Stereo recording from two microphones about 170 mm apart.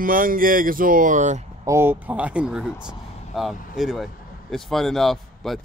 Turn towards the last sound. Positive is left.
turn(degrees=0)  # may be behind; listen again after turning